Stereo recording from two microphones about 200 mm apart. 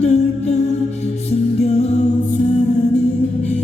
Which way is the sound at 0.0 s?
35° left (ahead or behind).